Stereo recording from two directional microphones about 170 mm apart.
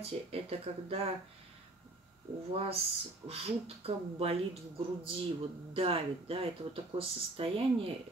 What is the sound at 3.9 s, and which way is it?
Speech, 35° right (ahead or behind).